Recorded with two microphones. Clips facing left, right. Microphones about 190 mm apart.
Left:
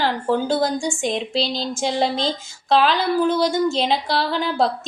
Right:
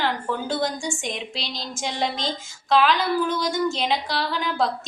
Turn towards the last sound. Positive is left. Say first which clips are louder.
# left 4 dB
turn(degrees=30)  # may be behind; listen again after turning